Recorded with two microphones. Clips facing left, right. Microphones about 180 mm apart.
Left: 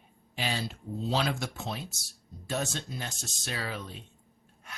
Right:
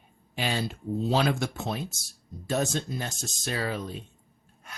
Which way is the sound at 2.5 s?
40° right (ahead or behind).